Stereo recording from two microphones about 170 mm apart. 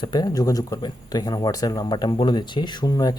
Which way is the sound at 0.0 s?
25° left (ahead or behind).